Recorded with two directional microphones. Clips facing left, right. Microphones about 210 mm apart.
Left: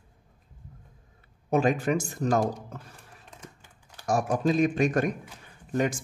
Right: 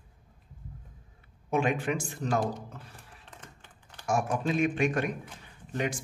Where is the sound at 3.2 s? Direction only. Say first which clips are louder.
Left 3 dB; 10° left (ahead or behind).